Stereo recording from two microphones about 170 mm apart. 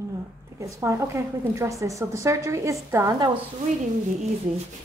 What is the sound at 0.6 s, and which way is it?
A woman's voice, 15° right (ahead or behind).